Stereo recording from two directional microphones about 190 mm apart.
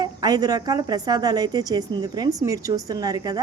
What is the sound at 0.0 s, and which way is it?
Speech, 20° right (ahead or behind).